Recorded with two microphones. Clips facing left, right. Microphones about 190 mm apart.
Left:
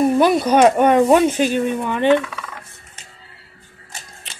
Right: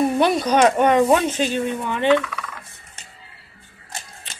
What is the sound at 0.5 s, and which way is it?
Speech, 10° left (ahead or behind).